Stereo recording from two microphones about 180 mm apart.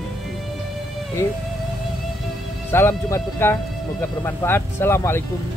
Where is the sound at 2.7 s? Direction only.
15° left (ahead or behind).